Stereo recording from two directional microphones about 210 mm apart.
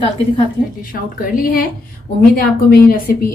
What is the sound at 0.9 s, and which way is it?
A woman's voice, 40° left (ahead or behind).